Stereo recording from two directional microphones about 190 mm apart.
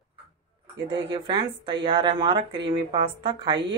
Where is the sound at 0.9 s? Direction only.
25° right (ahead or behind).